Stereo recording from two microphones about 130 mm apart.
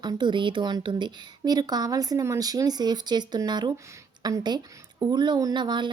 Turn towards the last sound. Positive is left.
turn(degrees=-35)  # may be behind; listen again after turning